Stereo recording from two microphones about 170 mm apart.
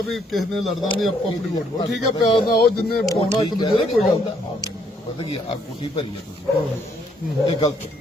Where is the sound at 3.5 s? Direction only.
25° left (ahead or behind).